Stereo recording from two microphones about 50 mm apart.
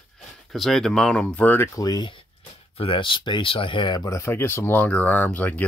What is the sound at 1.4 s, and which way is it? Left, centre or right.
Speech, left.